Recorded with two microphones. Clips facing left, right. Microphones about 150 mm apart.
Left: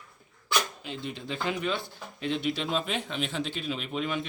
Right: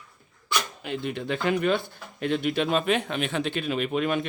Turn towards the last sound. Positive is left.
turn(degrees=-55)  # may be behind; listen again after turning